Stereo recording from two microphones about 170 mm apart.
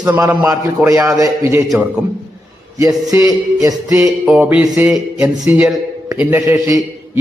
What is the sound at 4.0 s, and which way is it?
A man's voice, 5° right (ahead or behind).